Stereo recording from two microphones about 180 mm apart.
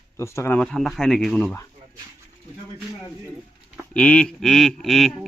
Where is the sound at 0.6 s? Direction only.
Centre (ahead or behind).